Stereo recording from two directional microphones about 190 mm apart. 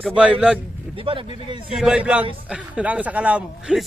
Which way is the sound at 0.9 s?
30° right (ahead or behind).